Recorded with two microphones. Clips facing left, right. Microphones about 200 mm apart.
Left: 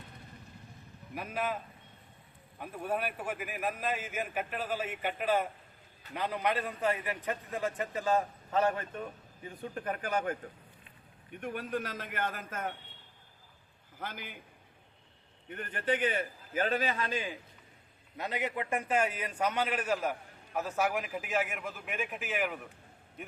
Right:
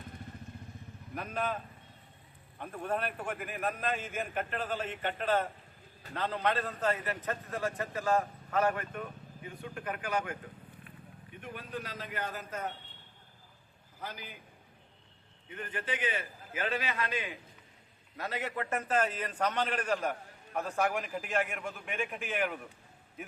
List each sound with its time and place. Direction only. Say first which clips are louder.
1.1 s a man's voice: even; 10° left (ahead or behind)
2.6 s a man's voice: even; 10° left (ahead or behind); by 9.0 s 25° left (ahead or behind)
9.7 s speech: left 1 dB; 40° left (ahead or behind)
11.3 s a man's voice: left 6 dB; 50° left (ahead or behind)
14.0 s a man's voice: left 1 dB; 55° left (ahead or behind)
15.9 s a man's voice: left 7 dB; 55° left (ahead or behind); by 17.3 s 35° left (ahead or behind)
18.2 s a man's voice: left 1 dB; 15° left (ahead or behind); by 22.6 s centre (ahead or behind)